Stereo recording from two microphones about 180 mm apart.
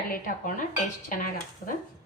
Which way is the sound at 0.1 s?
50° left (ahead or behind).